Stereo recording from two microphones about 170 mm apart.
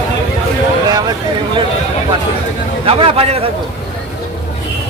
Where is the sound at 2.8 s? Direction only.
35° right (ahead or behind).